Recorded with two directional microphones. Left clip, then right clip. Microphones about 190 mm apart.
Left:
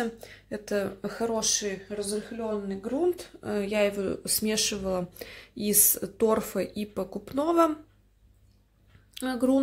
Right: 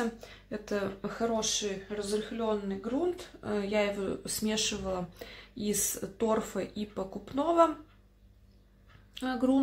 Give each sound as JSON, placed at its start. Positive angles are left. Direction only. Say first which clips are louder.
{"t": 0.0, "sound": "speech", "louder": "left 2 dB", "side_deg": 25}
{"t": 9.1, "sound": "speech", "louder": "left 3 dB", "side_deg": 30}